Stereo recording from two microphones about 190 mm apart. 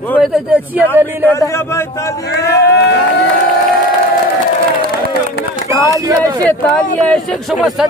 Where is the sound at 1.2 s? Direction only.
15° left (ahead or behind).